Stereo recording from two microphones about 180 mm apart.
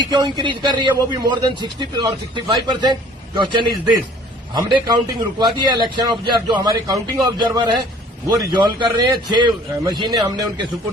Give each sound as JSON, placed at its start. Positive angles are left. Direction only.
{"t": 0.1, "sound": "a man's voice", "side_deg": -25}